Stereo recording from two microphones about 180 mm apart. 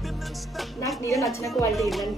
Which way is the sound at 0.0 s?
Centre (ahead or behind).